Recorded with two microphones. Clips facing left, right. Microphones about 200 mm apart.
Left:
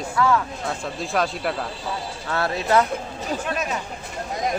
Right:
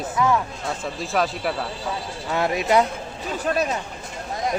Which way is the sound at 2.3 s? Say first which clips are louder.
Right 1 dB; 15° right (ahead or behind).